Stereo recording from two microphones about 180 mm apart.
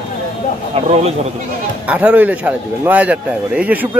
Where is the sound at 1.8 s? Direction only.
10° right (ahead or behind).